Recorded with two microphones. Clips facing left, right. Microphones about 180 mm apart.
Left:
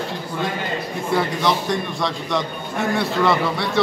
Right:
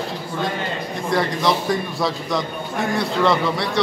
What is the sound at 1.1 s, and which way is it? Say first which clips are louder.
A man's voice: even; centre (ahead or behind).